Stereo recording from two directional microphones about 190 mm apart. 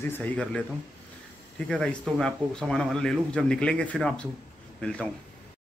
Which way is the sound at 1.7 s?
5° left (ahead or behind).